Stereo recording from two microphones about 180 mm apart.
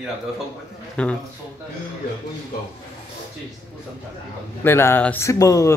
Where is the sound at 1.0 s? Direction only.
5° left (ahead or behind).